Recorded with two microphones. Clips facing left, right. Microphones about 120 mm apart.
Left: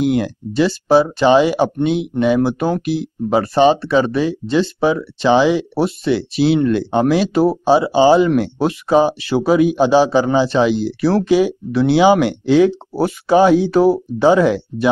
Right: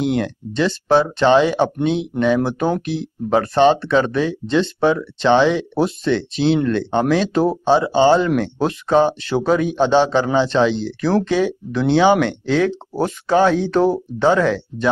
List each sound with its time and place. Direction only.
0.0 s speech: 5° left (ahead or behind)